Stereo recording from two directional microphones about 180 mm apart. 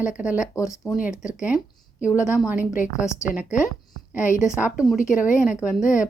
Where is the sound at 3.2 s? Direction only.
5° right (ahead or behind).